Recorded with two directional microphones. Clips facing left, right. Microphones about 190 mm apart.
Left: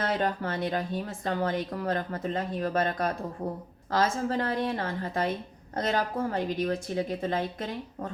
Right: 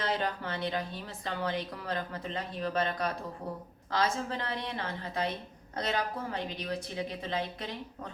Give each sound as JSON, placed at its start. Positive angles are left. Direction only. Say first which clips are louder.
{"t": 0.0, "sound": "a woman's voice", "louder": "left 4 dB", "side_deg": 45}